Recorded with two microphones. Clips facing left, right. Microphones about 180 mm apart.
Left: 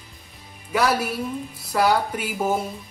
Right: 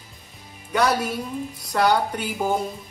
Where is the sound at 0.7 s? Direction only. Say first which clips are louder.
Even; 5° left (ahead or behind).